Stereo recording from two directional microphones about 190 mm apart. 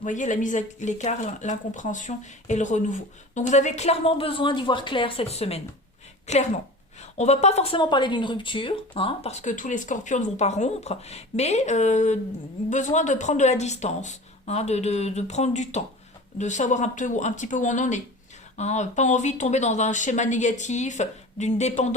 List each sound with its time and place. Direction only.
0.0 s speech: 40° left (ahead or behind)